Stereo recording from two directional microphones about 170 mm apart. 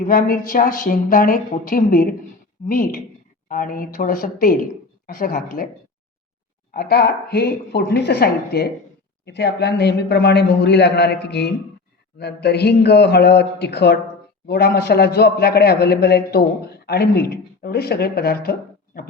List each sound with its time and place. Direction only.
0.0 s a woman's voice: 55° left (ahead or behind)
6.7 s a man's voice: 65° left (ahead or behind)
9.2 s a man's voice: 85° left; by 18.5 s 65° left (ahead or behind)